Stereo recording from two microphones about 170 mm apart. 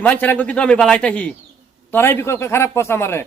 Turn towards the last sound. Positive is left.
turn(degrees=15)  # may be behind; listen again after turning